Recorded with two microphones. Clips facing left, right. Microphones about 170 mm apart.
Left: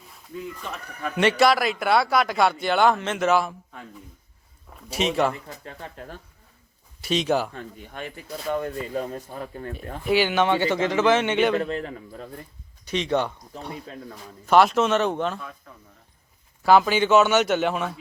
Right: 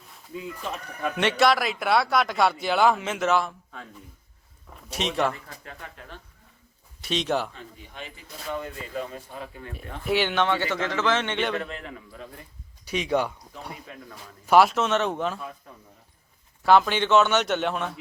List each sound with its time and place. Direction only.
1.1 s speech: centre (ahead or behind)
5.3 s speech: 25° left (ahead or behind)
7.0 s speech: centre (ahead or behind)
7.5 s speech: 55° left (ahead or behind)
10.1 s speech: 5° left (ahead or behind)
11.5 s a man's voice: 35° left (ahead or behind)
12.8 s speech: 10° right (ahead or behind)
14.4 s speech: 5° right (ahead or behind)
16.6 s speech: 5° left (ahead or behind)